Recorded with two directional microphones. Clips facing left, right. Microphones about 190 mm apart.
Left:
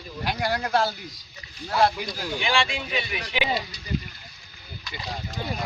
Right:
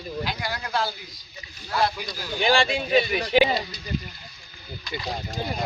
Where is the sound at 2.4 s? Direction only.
40° right (ahead or behind).